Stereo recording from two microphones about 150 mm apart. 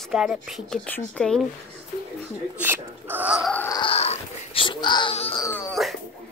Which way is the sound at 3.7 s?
40° left (ahead or behind).